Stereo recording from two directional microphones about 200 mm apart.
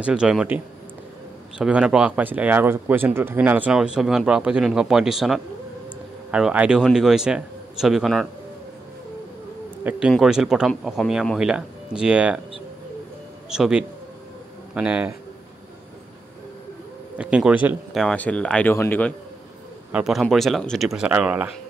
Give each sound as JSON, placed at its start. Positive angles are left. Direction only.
{"t": 0.0, "sound": "speech", "side_deg": -5}
{"t": 1.6, "sound": "speech", "side_deg": -5}
{"t": 9.8, "sound": "speech", "side_deg": -5}
{"t": 13.5, "sound": "speech", "side_deg": -5}
{"t": 17.2, "sound": "speech", "side_deg": -5}
{"t": 18.0, "sound": "speech", "side_deg": 5}
{"t": 19.9, "sound": "speech", "side_deg": 0}